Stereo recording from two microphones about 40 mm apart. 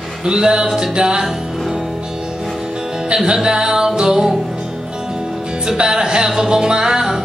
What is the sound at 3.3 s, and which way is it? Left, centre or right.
Music, centre.